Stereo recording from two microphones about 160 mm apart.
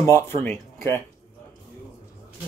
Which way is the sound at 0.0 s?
15° left (ahead or behind).